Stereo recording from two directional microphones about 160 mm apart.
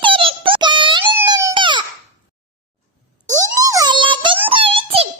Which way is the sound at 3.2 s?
20° right (ahead or behind).